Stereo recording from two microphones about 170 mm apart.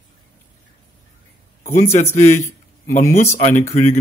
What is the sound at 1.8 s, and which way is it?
A man's voice, 40° left (ahead or behind).